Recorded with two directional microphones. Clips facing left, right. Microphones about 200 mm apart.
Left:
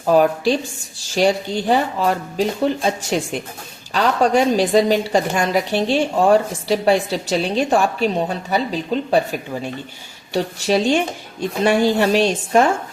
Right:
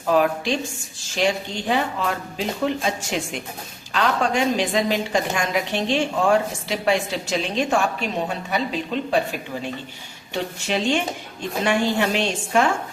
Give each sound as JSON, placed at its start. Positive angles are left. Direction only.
{"t": 0.1, "sound": "a woman's voice", "side_deg": 35}
{"t": 10.3, "sound": "a woman's voice", "side_deg": 40}